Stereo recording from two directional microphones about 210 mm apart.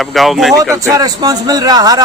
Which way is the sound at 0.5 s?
15° right (ahead or behind).